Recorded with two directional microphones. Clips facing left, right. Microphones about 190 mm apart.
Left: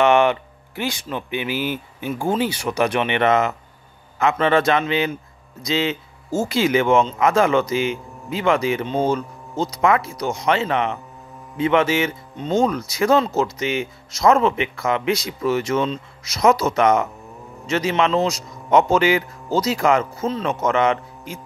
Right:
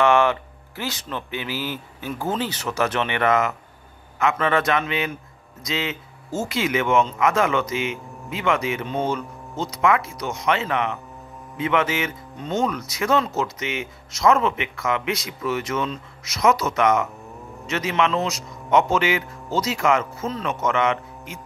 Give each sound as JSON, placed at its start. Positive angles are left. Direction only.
{"t": 0.0, "sound": "a man's voice", "side_deg": 20}